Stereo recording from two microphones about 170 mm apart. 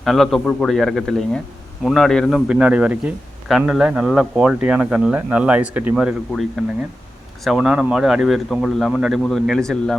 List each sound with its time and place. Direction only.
0.0 s speech: centre (ahead or behind)